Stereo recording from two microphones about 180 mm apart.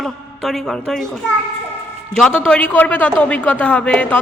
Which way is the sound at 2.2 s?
5° left (ahead or behind).